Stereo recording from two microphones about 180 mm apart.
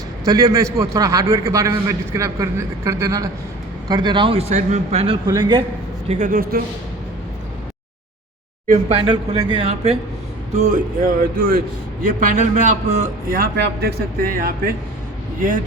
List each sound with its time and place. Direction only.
0.3 s a man's voice: 20° right (ahead or behind)
6.1 s a man's voice: 45° right (ahead or behind)
8.6 s a man's voice: 45° right (ahead or behind)
9.0 s a man's voice: 30° right (ahead or behind)
13.4 s a man's voice: 60° right (ahead or behind)